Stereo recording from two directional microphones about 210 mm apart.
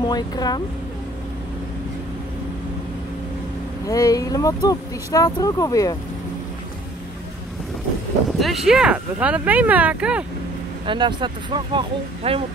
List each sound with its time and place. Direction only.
0.0 s speech: 20° left (ahead or behind)
3.8 s speech: 15° left (ahead or behind)
8.4 s speech: centre (ahead or behind)
10.9 s speech: 20° right (ahead or behind)